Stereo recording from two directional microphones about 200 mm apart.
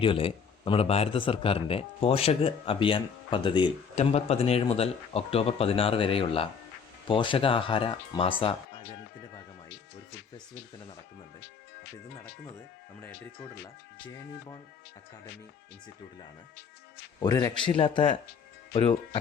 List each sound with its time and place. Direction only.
0.0 s speech: 25° left (ahead or behind)
10.3 s speech: 25° left (ahead or behind)
17.2 s speech: 20° left (ahead or behind)